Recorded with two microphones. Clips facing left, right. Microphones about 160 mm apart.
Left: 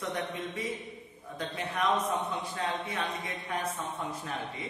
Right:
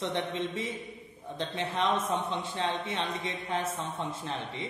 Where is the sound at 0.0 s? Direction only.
25° right (ahead or behind).